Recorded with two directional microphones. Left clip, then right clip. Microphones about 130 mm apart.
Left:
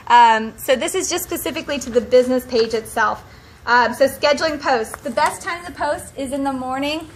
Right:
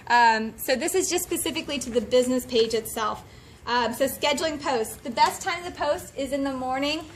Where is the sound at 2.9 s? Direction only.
55° right (ahead or behind).